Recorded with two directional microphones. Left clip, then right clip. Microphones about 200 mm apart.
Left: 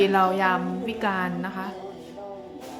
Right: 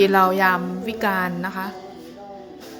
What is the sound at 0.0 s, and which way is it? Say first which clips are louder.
A woman's voice: right 4 dB; 20° right (ahead or behind).